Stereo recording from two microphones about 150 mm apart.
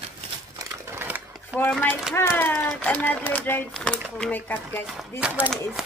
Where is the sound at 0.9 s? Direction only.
15° right (ahead or behind).